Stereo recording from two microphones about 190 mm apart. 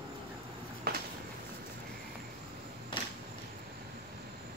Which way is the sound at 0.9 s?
55° right (ahead or behind).